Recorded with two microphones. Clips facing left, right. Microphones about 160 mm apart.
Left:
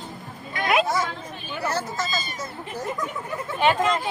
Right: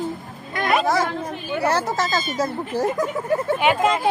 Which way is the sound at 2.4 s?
90° right.